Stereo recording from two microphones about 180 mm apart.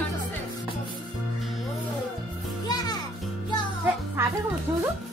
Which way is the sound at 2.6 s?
20° left (ahead or behind).